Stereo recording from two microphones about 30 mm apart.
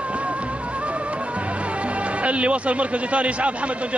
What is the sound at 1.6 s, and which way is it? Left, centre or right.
A man's voice, right.